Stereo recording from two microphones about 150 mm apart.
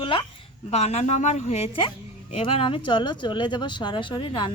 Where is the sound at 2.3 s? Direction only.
35° left (ahead or behind).